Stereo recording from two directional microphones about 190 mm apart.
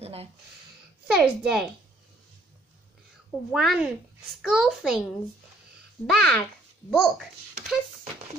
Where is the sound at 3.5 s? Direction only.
Centre (ahead or behind).